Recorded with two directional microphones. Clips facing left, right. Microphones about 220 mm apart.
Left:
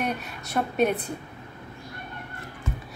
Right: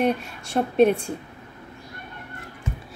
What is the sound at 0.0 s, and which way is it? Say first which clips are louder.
Speech: right 7 dB; 30° right (ahead or behind).